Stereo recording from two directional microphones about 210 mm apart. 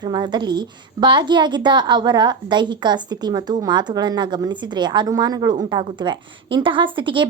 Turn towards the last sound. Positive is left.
turn(degrees=-25)  # may be behind; listen again after turning